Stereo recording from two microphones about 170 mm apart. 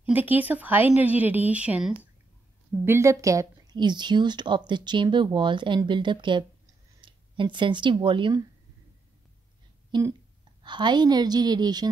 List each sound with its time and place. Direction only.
0.0 s a woman's voice: 10° right (ahead or behind); by 8.5 s 25° right (ahead or behind)
9.8 s speech: 25° right (ahead or behind)